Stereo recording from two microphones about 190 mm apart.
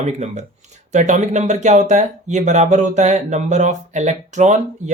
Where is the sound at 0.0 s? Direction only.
35° right (ahead or behind).